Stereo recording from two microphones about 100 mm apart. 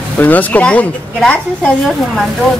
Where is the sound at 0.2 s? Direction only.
15° left (ahead or behind).